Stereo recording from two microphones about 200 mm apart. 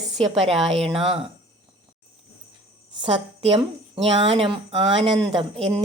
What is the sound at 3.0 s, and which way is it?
Speech, 25° right (ahead or behind).